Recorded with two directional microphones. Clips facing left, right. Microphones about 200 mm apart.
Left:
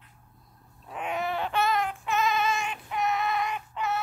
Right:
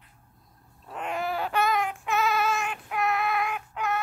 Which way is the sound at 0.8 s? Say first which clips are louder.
Even; 5° left (ahead or behind).